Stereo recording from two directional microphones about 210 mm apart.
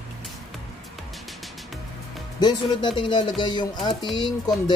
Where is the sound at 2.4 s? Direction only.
20° left (ahead or behind).